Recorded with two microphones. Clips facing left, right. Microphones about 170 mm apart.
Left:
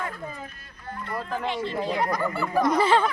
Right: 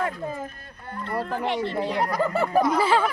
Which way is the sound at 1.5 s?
70° right (ahead or behind).